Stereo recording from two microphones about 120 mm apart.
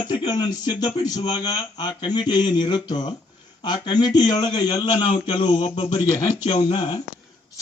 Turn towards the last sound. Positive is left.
turn(degrees=65)  # may be behind; listen again after turning